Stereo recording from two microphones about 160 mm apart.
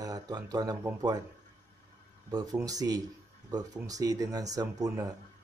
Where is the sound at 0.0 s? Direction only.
25° right (ahead or behind).